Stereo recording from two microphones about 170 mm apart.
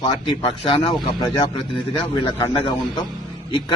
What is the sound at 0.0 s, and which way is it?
A man's voice, 30° left (ahead or behind).